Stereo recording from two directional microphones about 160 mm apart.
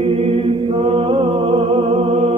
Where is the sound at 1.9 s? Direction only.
50° right (ahead or behind).